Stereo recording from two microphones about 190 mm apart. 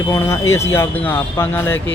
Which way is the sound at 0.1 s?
15° left (ahead or behind).